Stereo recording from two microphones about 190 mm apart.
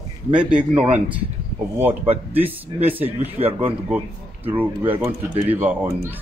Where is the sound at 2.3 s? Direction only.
10° right (ahead or behind).